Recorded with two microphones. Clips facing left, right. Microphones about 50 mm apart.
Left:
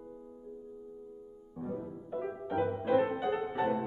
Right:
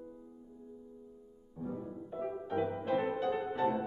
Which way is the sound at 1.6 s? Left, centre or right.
Centre.